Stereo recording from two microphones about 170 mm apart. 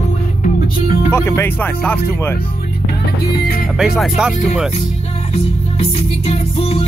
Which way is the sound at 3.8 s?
5° right (ahead or behind).